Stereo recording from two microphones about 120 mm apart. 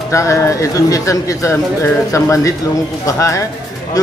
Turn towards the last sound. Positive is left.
turn(degrees=25)  # may be behind; listen again after turning